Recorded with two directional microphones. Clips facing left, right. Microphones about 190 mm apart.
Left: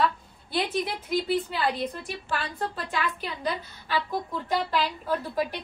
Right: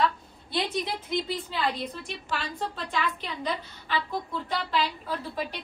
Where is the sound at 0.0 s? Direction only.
5° left (ahead or behind).